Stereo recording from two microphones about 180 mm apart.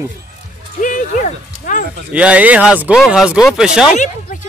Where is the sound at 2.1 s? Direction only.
5° right (ahead or behind).